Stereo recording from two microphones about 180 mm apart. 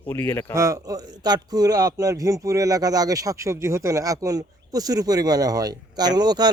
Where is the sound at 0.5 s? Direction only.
15° right (ahead or behind).